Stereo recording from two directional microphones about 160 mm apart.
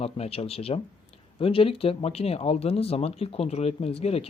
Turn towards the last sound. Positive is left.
turn(degrees=40)  # may be behind; listen again after turning